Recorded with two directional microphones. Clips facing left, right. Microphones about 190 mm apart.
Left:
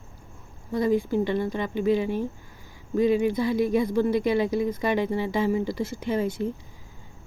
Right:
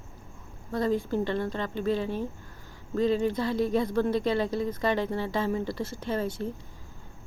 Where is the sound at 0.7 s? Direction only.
15° left (ahead or behind).